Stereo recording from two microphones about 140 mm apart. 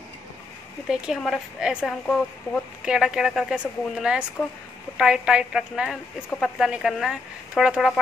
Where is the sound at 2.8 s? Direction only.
5° right (ahead or behind).